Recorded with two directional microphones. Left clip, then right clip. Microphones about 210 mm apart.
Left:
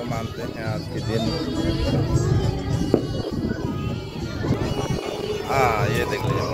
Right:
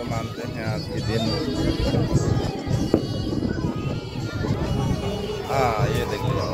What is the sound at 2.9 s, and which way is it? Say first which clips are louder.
Music: left 1 dB; 60° right (ahead or behind).